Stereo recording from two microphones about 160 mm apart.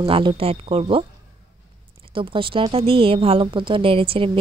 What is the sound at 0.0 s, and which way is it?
Speech, 30° right (ahead or behind).